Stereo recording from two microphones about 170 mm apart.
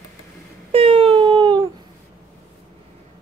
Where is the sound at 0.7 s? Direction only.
35° right (ahead or behind).